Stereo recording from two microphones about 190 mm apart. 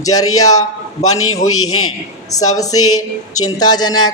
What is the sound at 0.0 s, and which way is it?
Speech, 20° left (ahead or behind).